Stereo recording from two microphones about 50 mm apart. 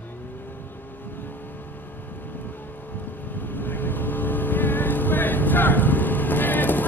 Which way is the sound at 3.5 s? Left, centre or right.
Left.